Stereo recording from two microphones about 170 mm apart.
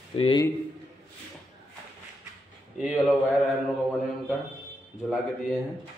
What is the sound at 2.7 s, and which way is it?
Speech, 5° right (ahead or behind).